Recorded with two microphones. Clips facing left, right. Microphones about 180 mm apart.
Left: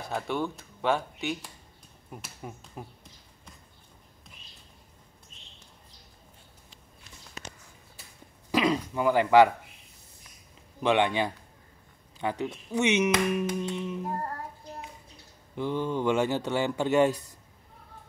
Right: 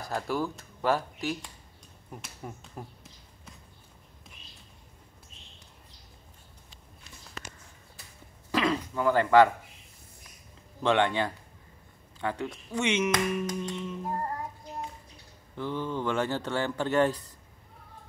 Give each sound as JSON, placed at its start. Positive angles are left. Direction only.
{"t": 0.0, "sound": "speech", "side_deg": 0}
{"t": 8.5, "sound": "a sound", "side_deg": 15}
{"t": 10.8, "sound": "speech", "side_deg": 15}
{"t": 15.5, "sound": "speech", "side_deg": 15}